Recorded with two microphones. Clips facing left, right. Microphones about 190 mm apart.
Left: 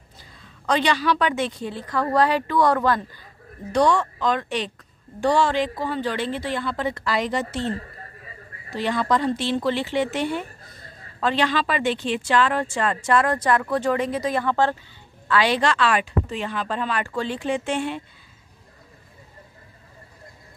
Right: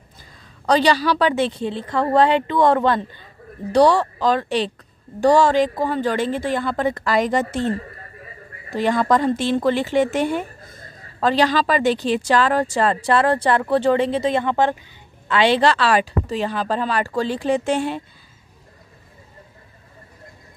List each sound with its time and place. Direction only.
0.7 s a woman's voice: 35° right (ahead or behind)